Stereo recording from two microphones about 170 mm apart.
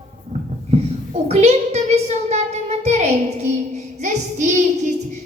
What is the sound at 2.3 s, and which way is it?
Child singing, 40° right (ahead or behind).